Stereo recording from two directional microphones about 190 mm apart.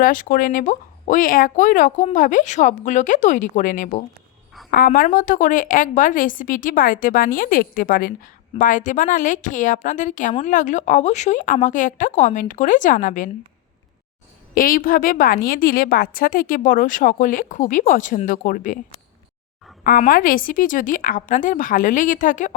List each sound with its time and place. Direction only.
0.0 s a woman's voice: 45° left (ahead or behind)
14.5 s a woman's voice: 50° left (ahead or behind)
19.8 s a woman's voice: 45° left (ahead or behind)